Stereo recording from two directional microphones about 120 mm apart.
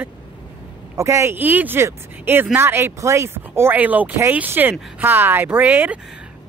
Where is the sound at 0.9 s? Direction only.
25° right (ahead or behind).